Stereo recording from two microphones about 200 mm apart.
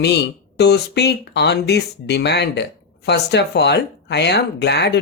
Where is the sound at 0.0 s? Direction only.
55° left (ahead or behind).